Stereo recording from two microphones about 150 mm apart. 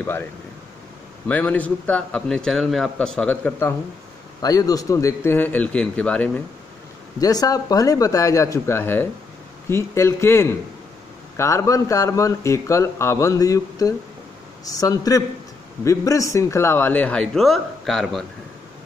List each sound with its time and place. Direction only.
0.0 s a man's voice: 15° left (ahead or behind)
1.3 s a man's voice: 10° left (ahead or behind)
7.2 s a man's voice: 25° left (ahead or behind); by 18.2 s centre (ahead or behind)